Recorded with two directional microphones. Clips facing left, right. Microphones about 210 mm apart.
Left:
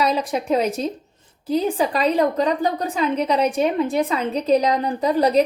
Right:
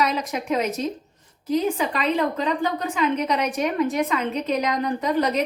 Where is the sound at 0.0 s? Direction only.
30° left (ahead or behind).